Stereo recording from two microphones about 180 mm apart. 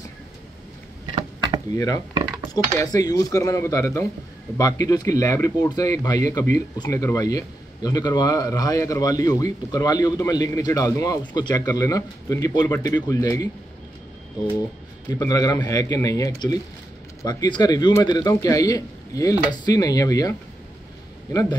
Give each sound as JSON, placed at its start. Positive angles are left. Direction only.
{"t": 2.5, "sound": "a man's voice", "side_deg": 20}